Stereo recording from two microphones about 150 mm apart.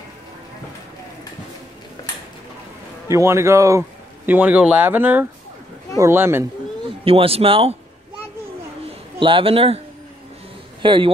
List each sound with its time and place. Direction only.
3.1 s speech: 20° right (ahead or behind)
7.1 s speech: 40° right (ahead or behind)
9.2 s speech: 35° right (ahead or behind)
10.8 s a man's voice: 35° right (ahead or behind)